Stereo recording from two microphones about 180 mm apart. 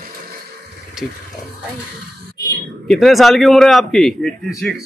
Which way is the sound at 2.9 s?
Centre (ahead or behind).